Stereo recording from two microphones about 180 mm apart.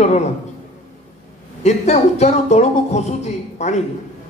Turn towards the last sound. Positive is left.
turn(degrees=40)  # may be behind; listen again after turning